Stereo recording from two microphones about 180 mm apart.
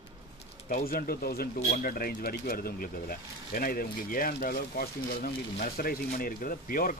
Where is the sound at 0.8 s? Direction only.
55° left (ahead or behind).